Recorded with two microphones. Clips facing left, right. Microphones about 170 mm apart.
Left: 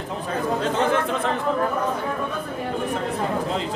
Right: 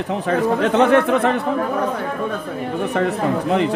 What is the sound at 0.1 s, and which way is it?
Speech, 65° right (ahead or behind).